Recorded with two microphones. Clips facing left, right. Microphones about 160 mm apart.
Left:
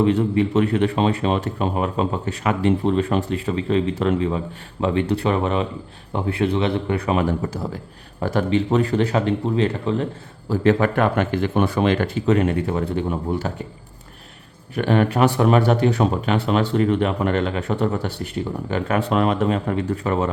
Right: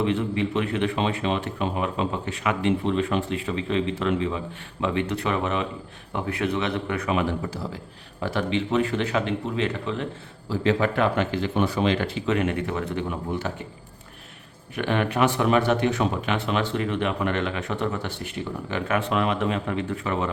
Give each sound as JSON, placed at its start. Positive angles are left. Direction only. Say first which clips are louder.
{"t": 0.0, "sound": "speech", "louder": "left 6 dB", "side_deg": 40}
{"t": 10.5, "sound": "speech", "louder": "left 5 dB", "side_deg": 50}
{"t": 14.8, "sound": "speech", "louder": "left 5 dB", "side_deg": 40}